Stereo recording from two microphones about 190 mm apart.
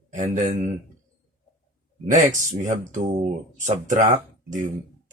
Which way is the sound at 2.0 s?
40° right (ahead or behind).